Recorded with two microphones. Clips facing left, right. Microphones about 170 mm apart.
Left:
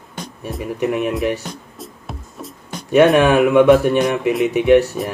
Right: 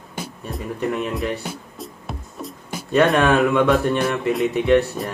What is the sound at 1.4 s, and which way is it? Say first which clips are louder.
Music: even; 5° right (ahead or behind).